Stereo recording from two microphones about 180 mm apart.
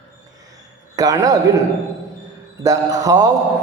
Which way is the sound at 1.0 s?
20° right (ahead or behind).